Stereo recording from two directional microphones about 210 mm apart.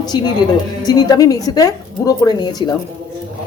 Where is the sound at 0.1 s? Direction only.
20° left (ahead or behind).